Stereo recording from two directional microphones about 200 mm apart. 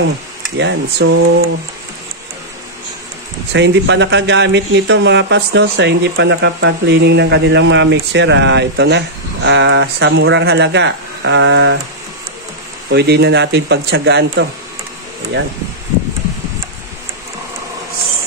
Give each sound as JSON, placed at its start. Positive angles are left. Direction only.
{"t": 0.4, "sound": "speech", "side_deg": -65}
{"t": 3.5, "sound": "speech", "side_deg": -65}
{"t": 12.9, "sound": "speech", "side_deg": -55}